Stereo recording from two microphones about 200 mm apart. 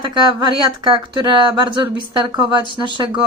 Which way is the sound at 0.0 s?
20° right (ahead or behind).